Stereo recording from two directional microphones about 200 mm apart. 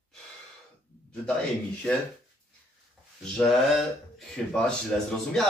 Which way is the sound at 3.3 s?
Centre (ahead or behind).